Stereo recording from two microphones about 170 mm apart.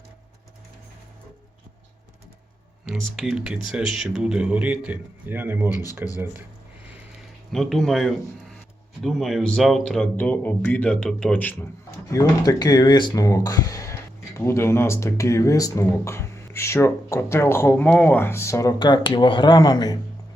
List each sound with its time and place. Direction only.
2.8 s speech: centre (ahead or behind)
7.5 s speech: centre (ahead or behind)
12.1 s speech: 20° left (ahead or behind)